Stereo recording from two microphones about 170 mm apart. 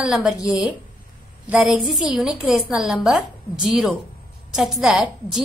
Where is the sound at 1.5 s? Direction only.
5° right (ahead or behind).